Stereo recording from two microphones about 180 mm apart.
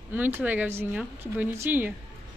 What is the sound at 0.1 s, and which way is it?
Speech, 10° right (ahead or behind).